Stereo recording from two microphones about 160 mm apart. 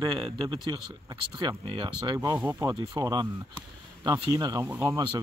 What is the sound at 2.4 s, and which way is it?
Speech, 10° right (ahead or behind).